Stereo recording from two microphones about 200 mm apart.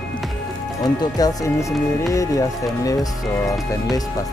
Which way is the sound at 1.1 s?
20° left (ahead or behind).